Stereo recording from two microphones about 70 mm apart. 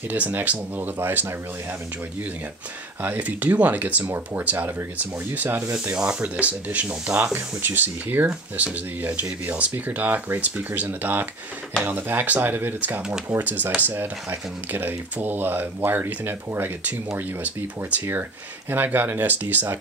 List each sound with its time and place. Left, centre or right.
0.1 s speech: right
3.0 s speech: right
4.1 s speech: right
5.9 s speech: centre
18.7 s speech: right